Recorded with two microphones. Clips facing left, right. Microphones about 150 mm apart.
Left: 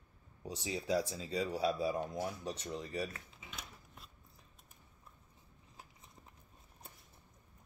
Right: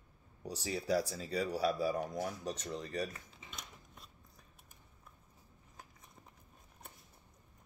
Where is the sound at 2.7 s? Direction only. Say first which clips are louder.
Even; 40° right (ahead or behind).